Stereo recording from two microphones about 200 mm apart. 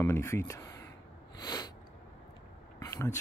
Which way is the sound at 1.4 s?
20° left (ahead or behind).